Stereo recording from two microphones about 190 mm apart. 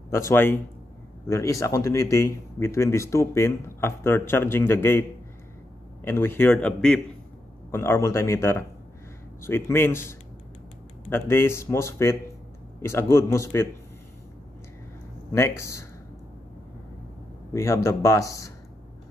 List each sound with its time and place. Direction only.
0.1 s speech: 15° left (ahead or behind)
6.0 s speech: 10° left (ahead or behind)
15.3 s speech: 15° left (ahead or behind)
17.5 s speech: 15° left (ahead or behind)